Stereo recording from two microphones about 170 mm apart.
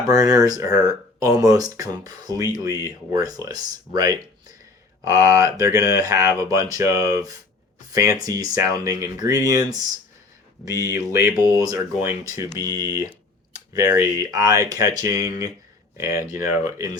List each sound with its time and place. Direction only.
0.1 s speech: 20° right (ahead or behind)